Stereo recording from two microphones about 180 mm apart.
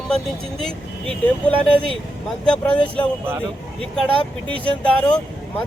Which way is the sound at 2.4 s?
5° left (ahead or behind).